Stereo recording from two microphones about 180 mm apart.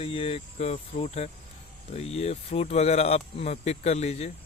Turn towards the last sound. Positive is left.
turn(degrees=35)  # may be behind; listen again after turning